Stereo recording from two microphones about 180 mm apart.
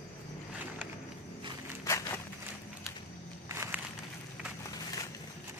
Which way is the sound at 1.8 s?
15° left (ahead or behind).